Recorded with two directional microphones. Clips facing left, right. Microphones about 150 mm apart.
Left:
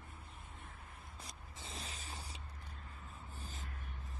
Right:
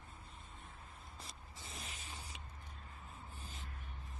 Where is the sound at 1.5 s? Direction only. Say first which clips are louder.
Left 3 dB; 30° left (ahead or behind).